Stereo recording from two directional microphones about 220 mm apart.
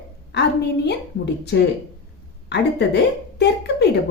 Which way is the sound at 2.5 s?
50° left (ahead or behind).